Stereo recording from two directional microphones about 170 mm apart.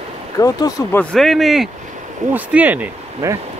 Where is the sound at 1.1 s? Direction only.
Centre (ahead or behind).